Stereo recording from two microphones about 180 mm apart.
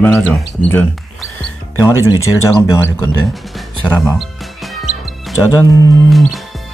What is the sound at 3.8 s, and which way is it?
Music, 5° left (ahead or behind).